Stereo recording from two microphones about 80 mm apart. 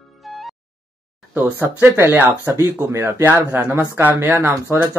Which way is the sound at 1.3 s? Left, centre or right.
Right.